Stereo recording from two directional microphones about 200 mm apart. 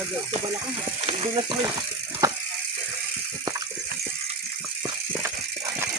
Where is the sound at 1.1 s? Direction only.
25° right (ahead or behind).